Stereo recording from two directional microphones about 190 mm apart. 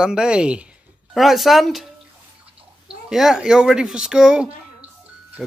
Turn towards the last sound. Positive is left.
turn(degrees=0)  # may be behind; listen again after turning